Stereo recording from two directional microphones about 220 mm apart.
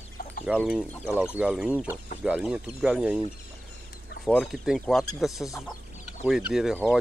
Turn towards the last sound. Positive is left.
turn(degrees=0)  # may be behind; listen again after turning